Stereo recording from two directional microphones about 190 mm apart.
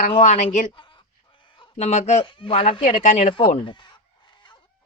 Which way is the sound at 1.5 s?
30° left (ahead or behind).